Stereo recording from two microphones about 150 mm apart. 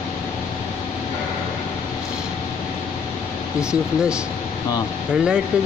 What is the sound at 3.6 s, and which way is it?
Speech, 5° right (ahead or behind).